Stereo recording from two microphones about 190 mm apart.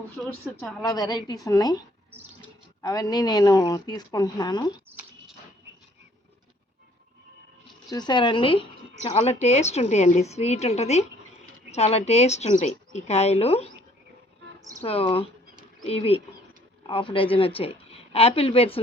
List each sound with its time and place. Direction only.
0.8 s a woman's voice: 20° left (ahead or behind)
2.8 s a woman's voice: 20° left (ahead or behind)
7.9 s speech: 20° left (ahead or behind)
14.8 s speech: 30° left (ahead or behind)